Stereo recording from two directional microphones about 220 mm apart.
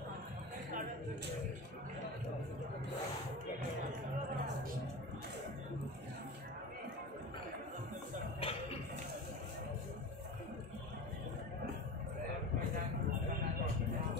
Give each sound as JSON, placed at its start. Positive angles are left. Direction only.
{"t": 8.4, "sound": "music", "side_deg": 25}